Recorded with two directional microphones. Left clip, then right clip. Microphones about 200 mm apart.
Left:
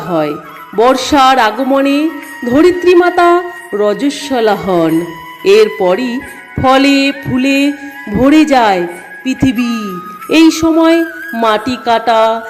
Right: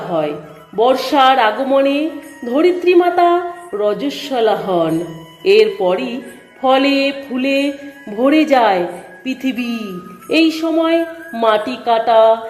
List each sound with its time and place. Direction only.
0.1 s music: 20° left (ahead or behind)
5.4 s a woman's voice: 15° left (ahead or behind)
10.3 s music: 20° left (ahead or behind)
11.3 s a woman's voice: 15° left (ahead or behind)